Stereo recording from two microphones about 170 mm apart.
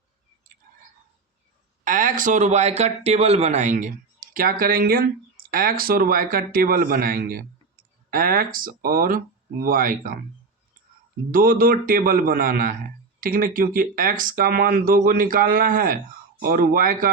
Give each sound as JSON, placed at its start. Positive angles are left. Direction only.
{"t": 1.8, "sound": "speech", "side_deg": -50}
{"t": 11.3, "sound": "speech", "side_deg": -55}